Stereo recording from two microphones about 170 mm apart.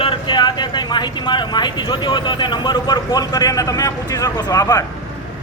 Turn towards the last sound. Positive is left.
turn(degrees=20)  # may be behind; listen again after turning